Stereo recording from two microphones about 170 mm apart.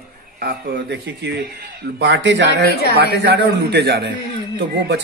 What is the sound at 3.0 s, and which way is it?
A man's voice, 75° right (ahead or behind).